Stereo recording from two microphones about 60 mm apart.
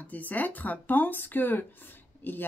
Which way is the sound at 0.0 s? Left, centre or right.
Left.